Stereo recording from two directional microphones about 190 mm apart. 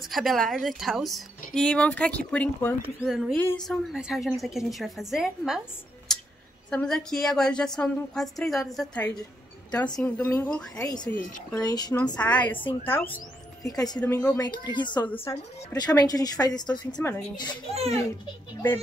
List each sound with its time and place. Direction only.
0.1 s speech: centre (ahead or behind)
3.3 s speech: 15° left (ahead or behind)
3.6 s speech: centre (ahead or behind)
6.7 s speech: 5° left (ahead or behind)
10.3 s a woman's voice: 15° left (ahead or behind)
14.0 s speech: 10° left (ahead or behind)
14.4 s a woman's voice: 25° left (ahead or behind)
15.0 s a woman's voice: 10° left (ahead or behind)
17.7 s a child's voice: 35° right (ahead or behind)